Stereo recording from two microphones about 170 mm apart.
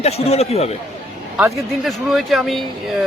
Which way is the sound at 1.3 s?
Centre (ahead or behind).